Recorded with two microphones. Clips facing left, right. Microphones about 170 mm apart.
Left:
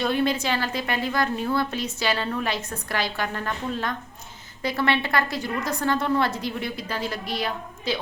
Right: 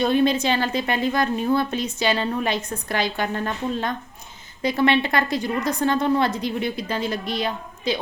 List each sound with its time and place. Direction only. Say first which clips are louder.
0.0 s a woman's voice: right 4 dB; 20° right (ahead or behind)